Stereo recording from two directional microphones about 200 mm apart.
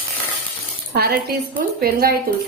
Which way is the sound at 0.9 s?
50° right (ahead or behind).